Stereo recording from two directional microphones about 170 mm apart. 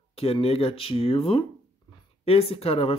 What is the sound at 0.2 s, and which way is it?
Speech, 35° left (ahead or behind).